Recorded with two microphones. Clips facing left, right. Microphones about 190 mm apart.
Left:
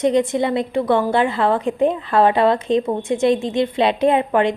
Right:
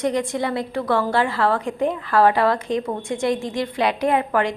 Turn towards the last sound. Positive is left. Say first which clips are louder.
# left 4 dB
turn(degrees=20)  # may be behind; listen again after turning